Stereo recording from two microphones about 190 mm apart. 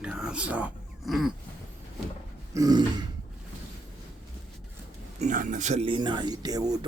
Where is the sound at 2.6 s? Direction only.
20° right (ahead or behind).